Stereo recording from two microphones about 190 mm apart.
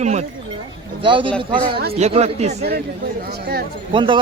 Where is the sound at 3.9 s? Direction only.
25° right (ahead or behind).